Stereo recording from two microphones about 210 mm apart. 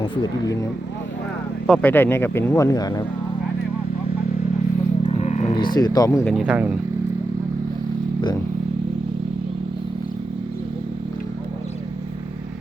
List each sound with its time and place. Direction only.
0.0 s speech: 20° left (ahead or behind)
1.6 s speech: 5° left (ahead or behind)
5.0 s vehicle: 35° left (ahead or behind)
5.5 s speech: 20° left (ahead or behind)
6.3 s speech: 5° right (ahead or behind)